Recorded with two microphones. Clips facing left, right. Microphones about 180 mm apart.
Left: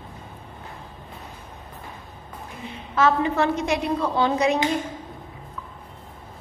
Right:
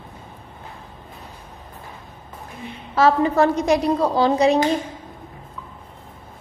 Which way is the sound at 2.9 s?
35° right (ahead or behind).